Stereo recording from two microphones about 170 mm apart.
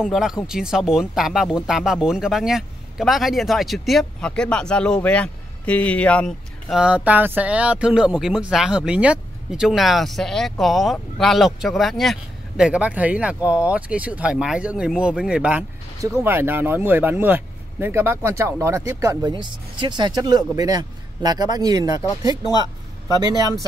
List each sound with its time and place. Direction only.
0.0 s speech: 5° right (ahead or behind); by 22.0 s 20° right (ahead or behind)